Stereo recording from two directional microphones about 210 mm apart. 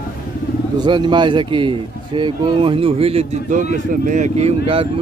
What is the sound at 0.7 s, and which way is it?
Speech, 20° right (ahead or behind).